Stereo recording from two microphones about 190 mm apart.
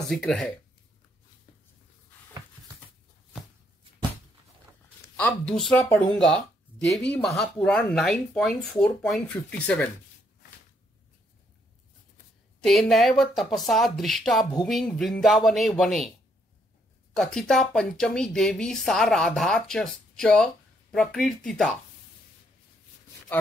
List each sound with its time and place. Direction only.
0.1 s speech: 5° left (ahead or behind)
5.1 s speech: 5° left (ahead or behind)
12.5 s speech: 5° left (ahead or behind)
17.1 s speech: centre (ahead or behind)